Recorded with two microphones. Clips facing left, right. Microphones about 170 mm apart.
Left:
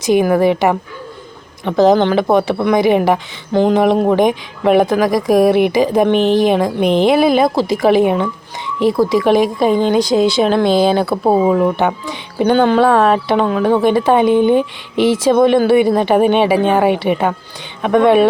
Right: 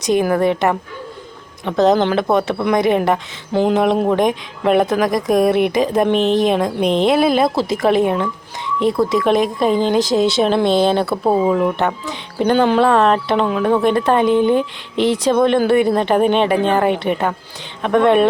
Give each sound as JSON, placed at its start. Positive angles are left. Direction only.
{"t": 0.0, "sound": "speech", "side_deg": 5}
{"t": 11.2, "sound": "speech", "side_deg": 20}
{"t": 11.5, "sound": "speech", "side_deg": 5}